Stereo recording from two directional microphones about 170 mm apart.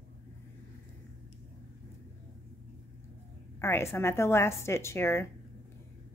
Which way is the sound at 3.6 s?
15° left (ahead or behind).